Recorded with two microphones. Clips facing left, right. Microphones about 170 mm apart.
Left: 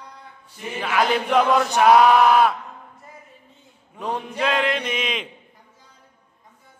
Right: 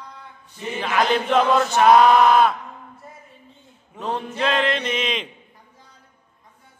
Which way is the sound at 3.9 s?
10° left (ahead or behind).